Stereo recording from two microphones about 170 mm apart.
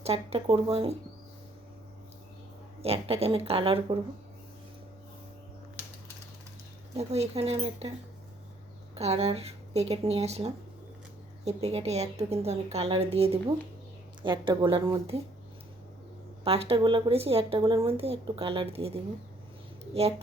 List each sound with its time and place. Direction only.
0.0 s a woman's voice: 35° right (ahead or behind)
2.8 s a woman's voice: 35° right (ahead or behind)
6.9 s a woman's voice: 35° right (ahead or behind)
9.0 s a woman's voice: 35° right (ahead or behind)
16.4 s a woman's voice: 35° right (ahead or behind)